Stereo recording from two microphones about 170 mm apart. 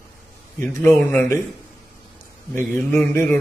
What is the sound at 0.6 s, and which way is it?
Speech, 15° left (ahead or behind).